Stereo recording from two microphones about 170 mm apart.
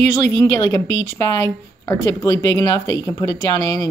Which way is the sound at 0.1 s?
15° left (ahead or behind).